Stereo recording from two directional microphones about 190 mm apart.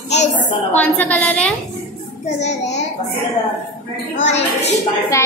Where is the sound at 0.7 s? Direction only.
10° left (ahead or behind).